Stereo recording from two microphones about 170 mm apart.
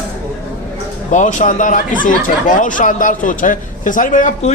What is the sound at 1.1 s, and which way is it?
Speech, 45° left (ahead or behind).